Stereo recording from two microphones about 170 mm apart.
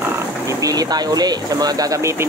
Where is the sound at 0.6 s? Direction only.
20° right (ahead or behind).